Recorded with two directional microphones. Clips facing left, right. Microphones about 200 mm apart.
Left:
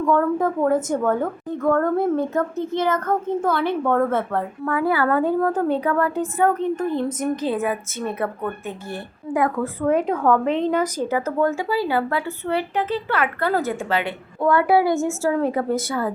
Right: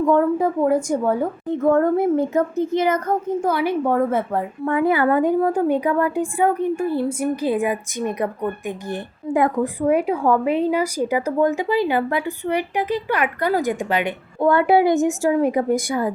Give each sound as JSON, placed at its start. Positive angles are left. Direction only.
{"t": 0.0, "sound": "speech", "side_deg": -20}
{"t": 9.8, "sound": "speech", "side_deg": -10}